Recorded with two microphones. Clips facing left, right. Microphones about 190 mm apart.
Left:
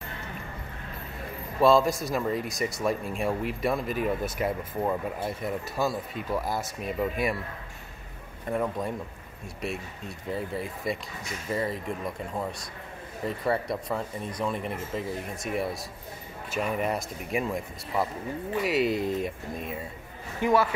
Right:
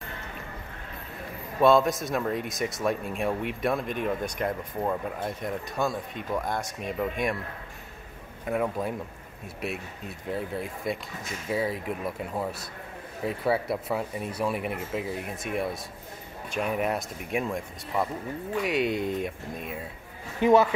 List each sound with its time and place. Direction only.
1.6 s speech: centre (ahead or behind)
8.5 s speech: 5° right (ahead or behind)
20.3 s a man's voice: 20° right (ahead or behind)